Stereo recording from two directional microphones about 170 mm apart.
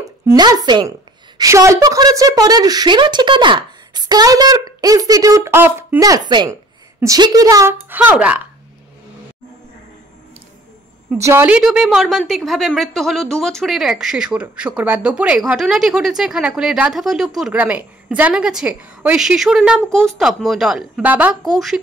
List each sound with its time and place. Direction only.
0.3 s a woman's voice: 20° right (ahead or behind)
11.1 s a woman's voice: 15° right (ahead or behind)